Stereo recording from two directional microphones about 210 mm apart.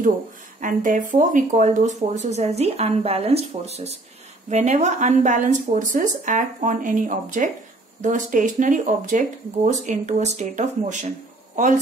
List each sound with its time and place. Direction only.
0.6 s speech: 40° right (ahead or behind)